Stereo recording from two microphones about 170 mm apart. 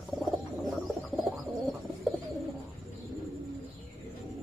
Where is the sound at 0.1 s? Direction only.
Centre (ahead or behind).